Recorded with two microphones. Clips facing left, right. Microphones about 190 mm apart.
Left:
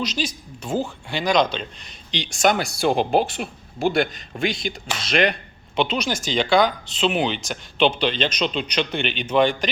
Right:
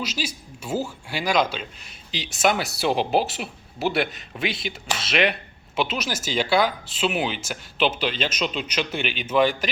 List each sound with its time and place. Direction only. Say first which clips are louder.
0.0 s speech: left 4 dB; 5° right (ahead or behind)
2.8 s speech: left 3 dB; 50° left (ahead or behind)
3.1 s speech: left 2 dB; 5° right (ahead or behind)